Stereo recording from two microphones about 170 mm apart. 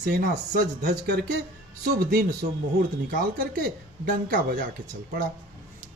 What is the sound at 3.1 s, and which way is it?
Speech, 60° right (ahead or behind).